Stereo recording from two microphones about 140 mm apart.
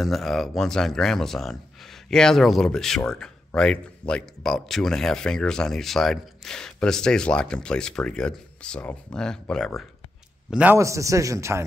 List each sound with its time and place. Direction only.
0.0 s speech: centre (ahead or behind)
10.5 s a man's voice: 10° right (ahead or behind)
10.8 s a man's voice: 20° right (ahead or behind)